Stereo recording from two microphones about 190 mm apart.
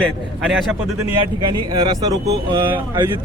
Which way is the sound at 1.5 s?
25° right (ahead or behind).